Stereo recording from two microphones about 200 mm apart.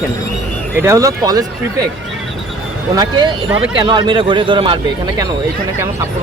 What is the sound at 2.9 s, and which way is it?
Speech, 20° right (ahead or behind).